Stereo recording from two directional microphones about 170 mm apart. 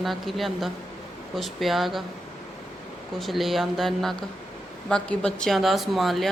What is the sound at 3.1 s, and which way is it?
A woman's voice, centre (ahead or behind).